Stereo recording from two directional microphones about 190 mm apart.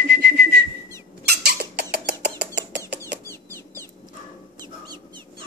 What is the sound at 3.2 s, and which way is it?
Chicken, 10° left (ahead or behind).